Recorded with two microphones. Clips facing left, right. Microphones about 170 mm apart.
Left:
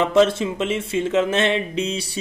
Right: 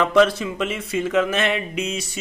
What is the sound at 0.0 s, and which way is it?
Speech, 25° left (ahead or behind).